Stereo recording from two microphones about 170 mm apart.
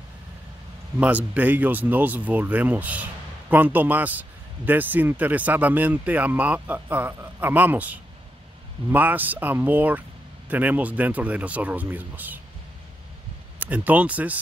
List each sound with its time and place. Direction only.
0.9 s speech: 10° right (ahead or behind)
13.6 s speech: 10° right (ahead or behind)